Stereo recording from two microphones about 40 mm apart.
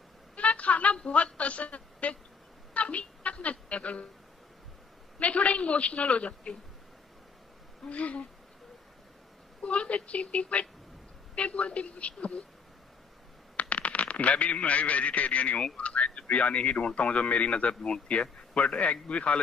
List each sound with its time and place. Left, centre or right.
0.4 s a sound: left
0.9 s a woman's voice: left
2.7 s a sound: left
5.2 s speech: left
7.9 s speech: left
9.6 s speech: left
13.6 s a man's voice: left